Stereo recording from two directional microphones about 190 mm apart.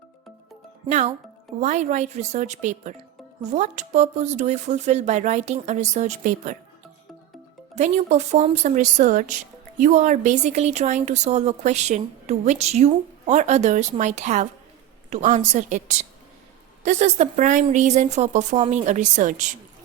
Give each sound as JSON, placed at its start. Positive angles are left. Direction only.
{"t": 0.9, "sound": "a woman's voice", "side_deg": -35}
{"t": 7.8, "sound": "a woman's voice", "side_deg": -35}